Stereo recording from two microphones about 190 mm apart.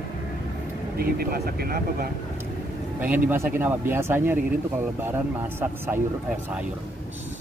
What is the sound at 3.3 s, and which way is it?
Speech, 10° right (ahead or behind).